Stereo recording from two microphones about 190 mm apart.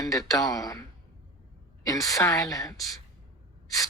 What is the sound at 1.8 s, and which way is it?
Speech, 20° left (ahead or behind).